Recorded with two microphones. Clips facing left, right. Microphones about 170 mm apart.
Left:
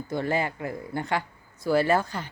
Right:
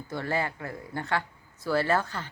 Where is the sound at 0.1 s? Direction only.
15° left (ahead or behind).